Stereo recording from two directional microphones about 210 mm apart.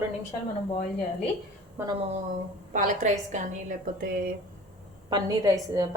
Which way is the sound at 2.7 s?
35° right (ahead or behind).